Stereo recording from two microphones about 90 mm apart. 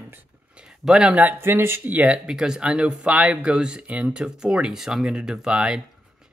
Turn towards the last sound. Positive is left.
turn(degrees=-10)  # may be behind; listen again after turning